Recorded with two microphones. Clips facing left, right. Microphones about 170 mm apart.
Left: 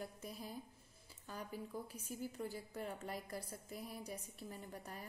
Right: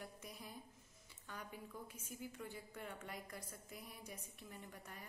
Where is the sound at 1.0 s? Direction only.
30° left (ahead or behind).